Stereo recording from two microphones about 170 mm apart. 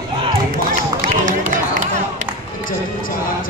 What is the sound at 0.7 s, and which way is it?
Run, 50° right (ahead or behind).